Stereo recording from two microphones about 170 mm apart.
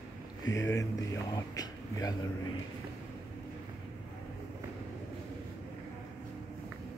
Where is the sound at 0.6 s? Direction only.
20° left (ahead or behind).